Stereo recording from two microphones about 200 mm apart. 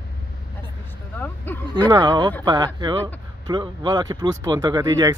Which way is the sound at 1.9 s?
20° right (ahead or behind).